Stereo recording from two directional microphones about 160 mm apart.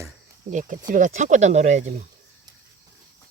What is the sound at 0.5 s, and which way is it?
Speech, 55° right (ahead or behind).